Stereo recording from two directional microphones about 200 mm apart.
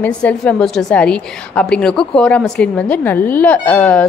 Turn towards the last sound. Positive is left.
turn(degrees=10)  # may be behind; listen again after turning